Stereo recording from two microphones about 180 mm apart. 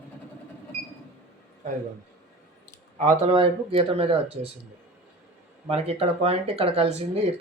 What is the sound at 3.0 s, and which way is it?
Speech, 35° right (ahead or behind).